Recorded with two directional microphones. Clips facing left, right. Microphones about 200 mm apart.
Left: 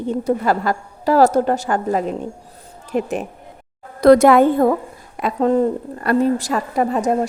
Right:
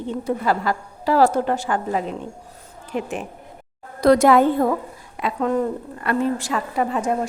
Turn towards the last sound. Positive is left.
turn(degrees=40)  # may be behind; listen again after turning